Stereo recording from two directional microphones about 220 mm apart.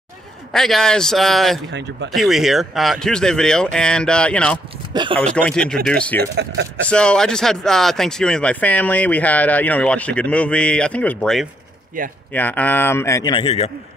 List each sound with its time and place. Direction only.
0.5 s speech: centre (ahead or behind)
1.7 s speech: 50° right (ahead or behind)
2.1 s speech: centre (ahead or behind)
4.9 s speech: 20° right (ahead or behind)
5.2 s speech: 5° left (ahead or behind)
6.1 s speech: 50° right (ahead or behind)
6.9 s speech: 5° left (ahead or behind)
12.0 s a man's voice: 40° right (ahead or behind)
12.3 s a man's voice: 10° left (ahead or behind); by 13.7 s 25° left (ahead or behind)